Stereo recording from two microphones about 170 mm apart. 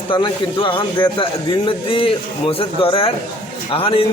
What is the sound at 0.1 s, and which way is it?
A man's voice, 30° left (ahead or behind).